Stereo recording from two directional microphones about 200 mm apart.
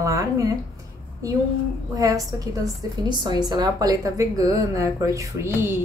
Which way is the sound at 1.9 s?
15° right (ahead or behind).